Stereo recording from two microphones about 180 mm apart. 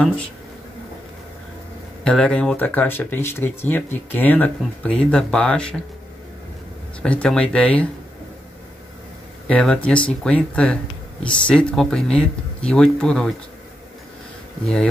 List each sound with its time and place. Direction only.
2.0 s speech: 5° left (ahead or behind)
7.0 s speech: 5° left (ahead or behind)
9.5 s speech: 5° left (ahead or behind)